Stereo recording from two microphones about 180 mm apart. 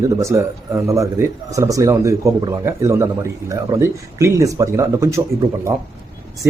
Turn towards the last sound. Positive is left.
turn(degrees=-15)  # may be behind; listen again after turning